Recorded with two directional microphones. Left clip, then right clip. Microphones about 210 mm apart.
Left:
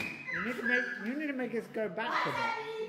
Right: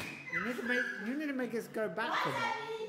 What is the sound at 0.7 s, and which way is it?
A woman's voice, 20° right (ahead or behind).